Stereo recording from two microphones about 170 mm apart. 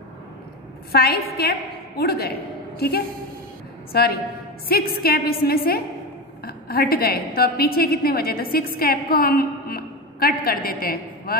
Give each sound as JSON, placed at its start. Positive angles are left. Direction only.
{"t": 0.9, "sound": "a woman's voice", "side_deg": 65}
{"t": 3.9, "sound": "a woman's voice", "side_deg": 65}